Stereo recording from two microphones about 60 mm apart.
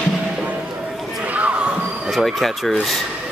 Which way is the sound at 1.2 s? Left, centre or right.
Right.